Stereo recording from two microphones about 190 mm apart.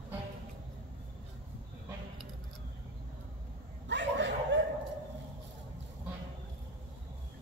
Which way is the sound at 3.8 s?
70° right (ahead or behind).